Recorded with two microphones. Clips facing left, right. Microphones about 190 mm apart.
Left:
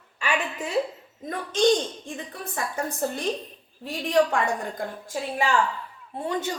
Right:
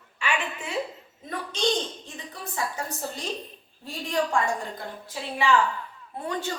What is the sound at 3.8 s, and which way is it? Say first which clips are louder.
Speech: left 6 dB; 70° left (ahead or behind).